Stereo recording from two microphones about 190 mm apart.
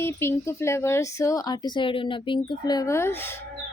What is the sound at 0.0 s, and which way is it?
Speech, 15° left (ahead or behind).